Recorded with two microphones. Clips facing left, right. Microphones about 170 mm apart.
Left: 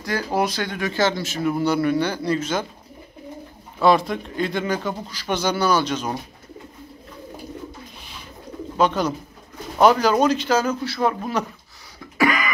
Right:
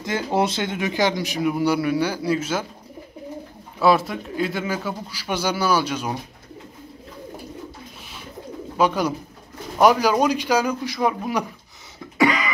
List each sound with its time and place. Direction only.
0.0 s speech: 20° right (ahead or behind)
3.8 s speech: 5° right (ahead or behind)
8.7 s speech: 10° right (ahead or behind)
12.2 s cough: 20° right (ahead or behind)